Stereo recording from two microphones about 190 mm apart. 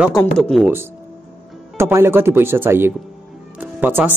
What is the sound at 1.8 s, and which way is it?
Speech, 15° right (ahead or behind).